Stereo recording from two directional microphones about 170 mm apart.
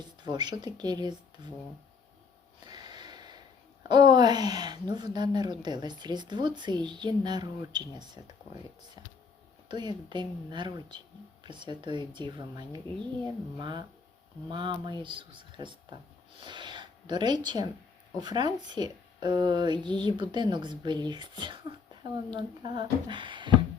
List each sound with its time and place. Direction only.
0.0 s speech: 25° right (ahead or behind)
2.6 s snort: 25° right (ahead or behind)
3.8 s speech: 25° right (ahead or behind)
9.6 s speech: 25° right (ahead or behind)